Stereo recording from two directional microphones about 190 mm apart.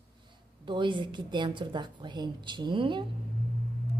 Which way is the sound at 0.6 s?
25° right (ahead or behind).